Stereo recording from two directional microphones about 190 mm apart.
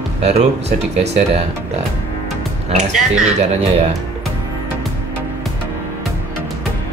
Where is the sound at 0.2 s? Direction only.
35° right (ahead or behind).